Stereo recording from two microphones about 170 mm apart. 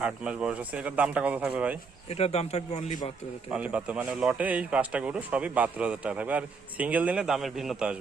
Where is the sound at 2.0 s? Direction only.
40° left (ahead or behind).